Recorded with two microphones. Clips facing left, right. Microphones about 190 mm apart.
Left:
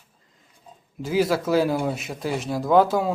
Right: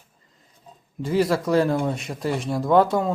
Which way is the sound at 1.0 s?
Centre (ahead or behind).